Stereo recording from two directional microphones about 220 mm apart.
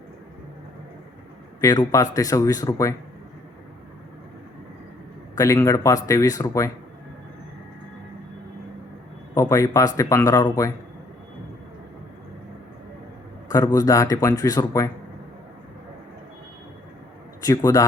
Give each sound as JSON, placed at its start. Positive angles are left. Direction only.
{"t": 1.6, "sound": "speech", "side_deg": 20}
{"t": 5.3, "sound": "speech", "side_deg": 15}
{"t": 9.3, "sound": "speech", "side_deg": 15}
{"t": 13.5, "sound": "speech", "side_deg": 15}
{"t": 17.4, "sound": "a man's voice", "side_deg": 15}